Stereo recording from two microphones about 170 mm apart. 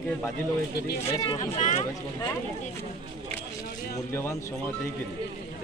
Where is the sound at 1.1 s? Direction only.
20° left (ahead or behind).